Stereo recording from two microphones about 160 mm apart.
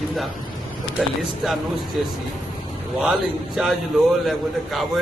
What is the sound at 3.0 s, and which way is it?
Speech, 5° right (ahead or behind).